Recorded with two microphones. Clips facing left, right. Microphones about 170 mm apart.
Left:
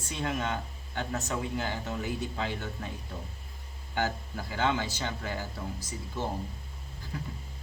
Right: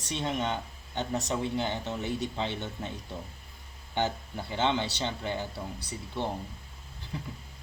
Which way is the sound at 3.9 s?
20° right (ahead or behind).